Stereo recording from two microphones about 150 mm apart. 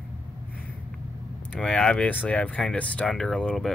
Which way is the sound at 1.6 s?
5° left (ahead or behind).